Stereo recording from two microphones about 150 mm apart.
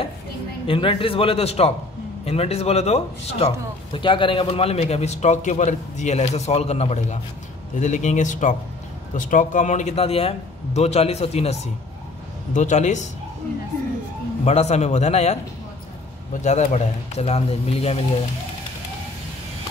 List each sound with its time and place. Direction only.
0.7 s speech: 35° left (ahead or behind)
14.4 s speech: 50° left (ahead or behind)
16.3 s speech: 50° left (ahead or behind)